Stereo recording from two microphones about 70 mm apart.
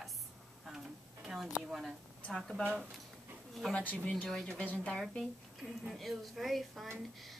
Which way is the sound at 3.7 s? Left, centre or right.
Left.